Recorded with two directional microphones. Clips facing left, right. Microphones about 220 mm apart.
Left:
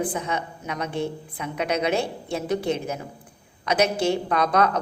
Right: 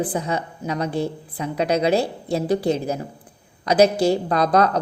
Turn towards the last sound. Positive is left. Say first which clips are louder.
# right 3 dB
turn(degrees=-35)  # may be behind; listen again after turning